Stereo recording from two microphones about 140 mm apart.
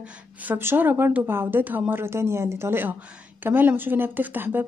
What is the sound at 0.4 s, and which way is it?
Speech, 15° right (ahead or behind).